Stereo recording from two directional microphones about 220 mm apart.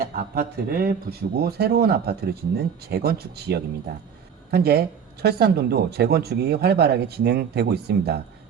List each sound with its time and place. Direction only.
0.0 s speech: 40° right (ahead or behind)